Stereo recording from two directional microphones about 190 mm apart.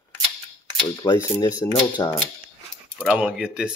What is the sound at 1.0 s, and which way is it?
Speech, 20° left (ahead or behind).